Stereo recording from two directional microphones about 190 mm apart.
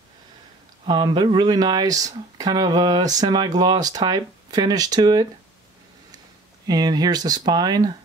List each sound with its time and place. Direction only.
0.8 s speech: 20° right (ahead or behind)